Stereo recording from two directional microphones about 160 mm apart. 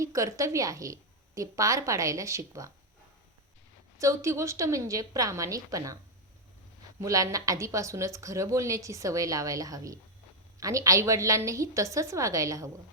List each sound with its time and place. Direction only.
0.0 s speech: 20° right (ahead or behind)
3.9 s speech: 20° right (ahead or behind)
7.0 s speech: 20° right (ahead or behind)